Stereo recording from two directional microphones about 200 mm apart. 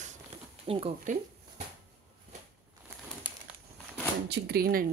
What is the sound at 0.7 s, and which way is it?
Speech, 30° right (ahead or behind).